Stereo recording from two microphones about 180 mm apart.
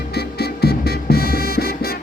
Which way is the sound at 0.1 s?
65° left (ahead or behind).